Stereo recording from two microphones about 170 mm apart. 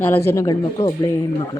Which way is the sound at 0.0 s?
15° left (ahead or behind).